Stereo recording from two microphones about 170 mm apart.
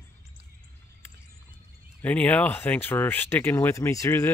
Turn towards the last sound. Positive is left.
turn(degrees=15)  # may be behind; listen again after turning